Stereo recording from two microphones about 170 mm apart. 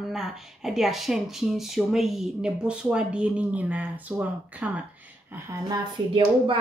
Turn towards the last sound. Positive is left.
turn(degrees=-30)  # may be behind; listen again after turning